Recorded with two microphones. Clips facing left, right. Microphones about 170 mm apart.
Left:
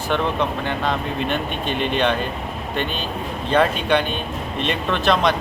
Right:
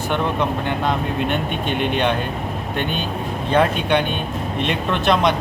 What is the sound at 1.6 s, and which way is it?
Speech, 60° right (ahead or behind).